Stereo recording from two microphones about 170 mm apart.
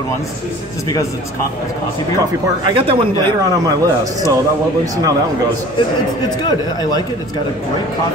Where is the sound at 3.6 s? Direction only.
20° right (ahead or behind).